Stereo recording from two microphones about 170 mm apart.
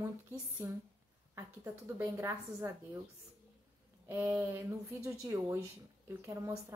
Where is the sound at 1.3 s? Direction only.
15° right (ahead or behind).